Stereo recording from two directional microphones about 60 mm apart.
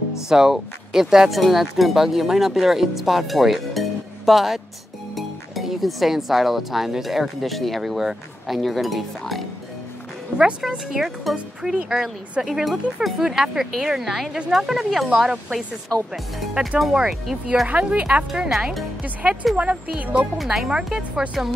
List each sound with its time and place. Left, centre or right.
0.3 s speech: centre
10.3 s speech: centre
17.6 s speech: right
18.3 s speech: centre
19.5 s speech: centre